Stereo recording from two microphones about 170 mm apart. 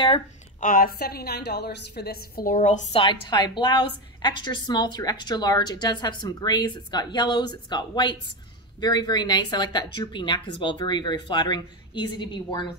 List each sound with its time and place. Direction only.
0.6 s a woman's voice: 55° left (ahead or behind)
2.9 s a woman's voice: 30° left (ahead or behind)